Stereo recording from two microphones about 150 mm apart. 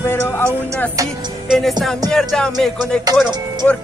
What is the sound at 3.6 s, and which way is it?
Speech, 5° left (ahead or behind).